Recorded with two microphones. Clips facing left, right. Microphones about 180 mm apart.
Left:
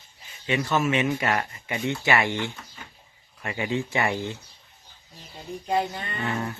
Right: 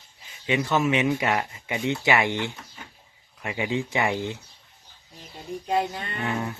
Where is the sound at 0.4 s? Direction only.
15° right (ahead or behind).